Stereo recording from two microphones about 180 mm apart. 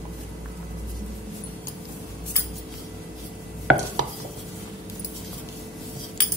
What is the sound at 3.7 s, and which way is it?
Chopping, 5° right (ahead or behind).